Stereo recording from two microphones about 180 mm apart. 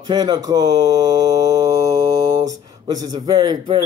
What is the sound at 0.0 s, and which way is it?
Mantra, 20° right (ahead or behind).